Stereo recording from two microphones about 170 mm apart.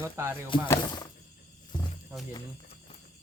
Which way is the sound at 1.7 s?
25° left (ahead or behind).